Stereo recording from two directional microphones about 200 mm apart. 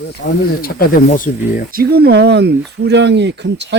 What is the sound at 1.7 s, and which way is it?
Speech, 50° right (ahead or behind).